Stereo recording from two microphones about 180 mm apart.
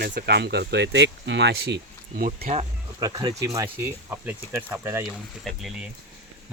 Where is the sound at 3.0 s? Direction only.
20° right (ahead or behind).